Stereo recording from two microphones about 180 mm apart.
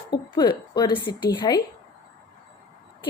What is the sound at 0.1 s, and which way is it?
A woman's voice, 25° left (ahead or behind).